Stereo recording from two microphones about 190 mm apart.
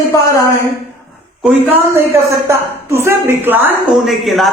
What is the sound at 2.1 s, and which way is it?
A woman's voice, 15° right (ahead or behind).